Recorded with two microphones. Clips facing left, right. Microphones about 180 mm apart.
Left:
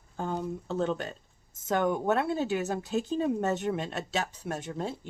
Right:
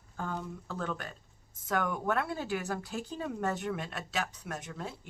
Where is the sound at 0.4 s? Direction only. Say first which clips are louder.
Left 8 dB; 25° left (ahead or behind).